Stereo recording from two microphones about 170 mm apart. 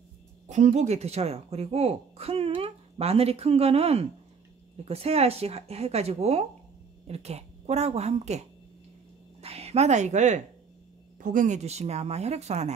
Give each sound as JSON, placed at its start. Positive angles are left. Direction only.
{"t": 0.5, "sound": "a woman's voice", "side_deg": -45}